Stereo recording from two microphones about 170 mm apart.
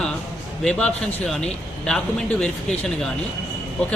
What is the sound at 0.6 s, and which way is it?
Speech, 5° left (ahead or behind).